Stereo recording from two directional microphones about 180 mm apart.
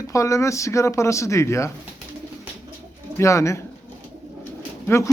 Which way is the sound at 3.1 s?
15° left (ahead or behind).